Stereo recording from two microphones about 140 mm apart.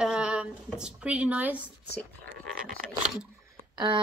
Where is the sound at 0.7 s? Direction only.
5° right (ahead or behind).